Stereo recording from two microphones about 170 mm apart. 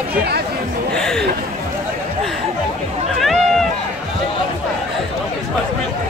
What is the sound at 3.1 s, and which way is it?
Run, centre (ahead or behind).